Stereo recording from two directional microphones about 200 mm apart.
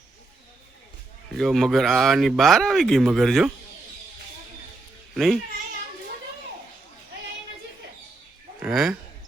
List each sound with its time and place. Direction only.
1.3 s speech: centre (ahead or behind)
5.1 s speech: centre (ahead or behind)
8.6 s speech: 5° right (ahead or behind)